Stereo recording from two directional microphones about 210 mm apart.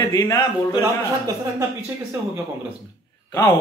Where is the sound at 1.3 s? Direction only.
15° right (ahead or behind).